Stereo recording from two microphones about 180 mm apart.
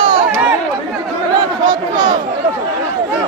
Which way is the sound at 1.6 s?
25° right (ahead or behind).